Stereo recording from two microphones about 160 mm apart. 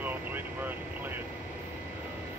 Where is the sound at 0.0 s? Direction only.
10° right (ahead or behind).